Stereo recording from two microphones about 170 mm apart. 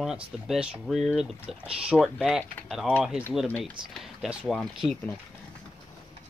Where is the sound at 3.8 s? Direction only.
25° right (ahead or behind).